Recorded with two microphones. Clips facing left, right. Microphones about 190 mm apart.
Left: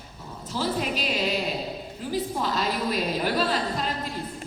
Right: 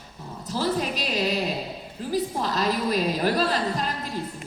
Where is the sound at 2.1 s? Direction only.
40° right (ahead or behind).